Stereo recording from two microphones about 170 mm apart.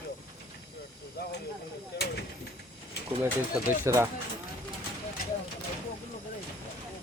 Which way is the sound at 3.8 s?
15° right (ahead or behind).